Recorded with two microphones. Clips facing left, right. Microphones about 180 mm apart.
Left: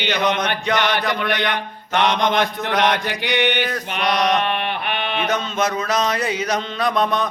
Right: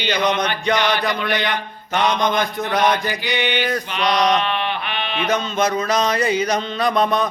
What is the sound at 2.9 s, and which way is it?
Mantra, 65° left (ahead or behind).